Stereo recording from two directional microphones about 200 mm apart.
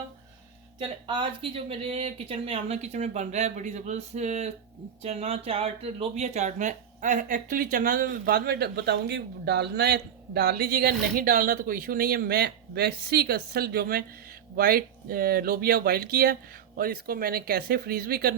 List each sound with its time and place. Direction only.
1.0 s speech: 25° right (ahead or behind); by 18.3 s 50° right (ahead or behind)